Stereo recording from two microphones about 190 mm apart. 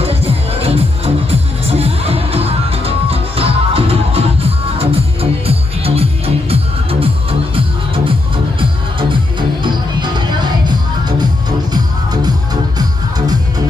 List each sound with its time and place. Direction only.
0.0 s music: 30° right (ahead or behind)
9.1 s music: 25° right (ahead or behind)